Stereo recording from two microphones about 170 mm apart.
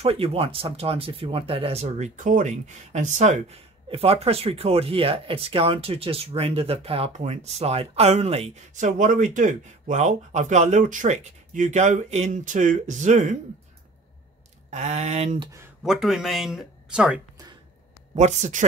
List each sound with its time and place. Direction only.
0.0 s speech: 35° right (ahead or behind)
14.7 s speech: 40° right (ahead or behind)
15.8 s speech: centre (ahead or behind)
18.1 s speech: 45° right (ahead or behind)